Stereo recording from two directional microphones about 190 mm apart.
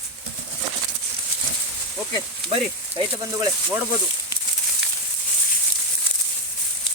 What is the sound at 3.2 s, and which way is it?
Speech, 15° right (ahead or behind).